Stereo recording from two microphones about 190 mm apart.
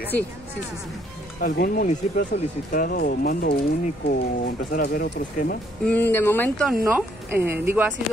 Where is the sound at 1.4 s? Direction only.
45° left (ahead or behind).